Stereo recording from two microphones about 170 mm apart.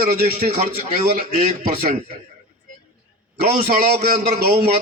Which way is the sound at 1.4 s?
40° right (ahead or behind).